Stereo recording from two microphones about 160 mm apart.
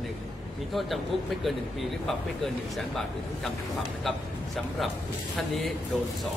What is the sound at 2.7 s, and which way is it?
A man's voice, centre (ahead or behind).